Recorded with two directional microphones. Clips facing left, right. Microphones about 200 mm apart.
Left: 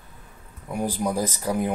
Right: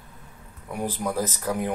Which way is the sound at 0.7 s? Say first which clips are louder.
Left 2 dB; 10° left (ahead or behind).